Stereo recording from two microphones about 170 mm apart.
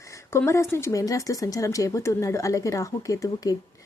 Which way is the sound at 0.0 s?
15° left (ahead or behind).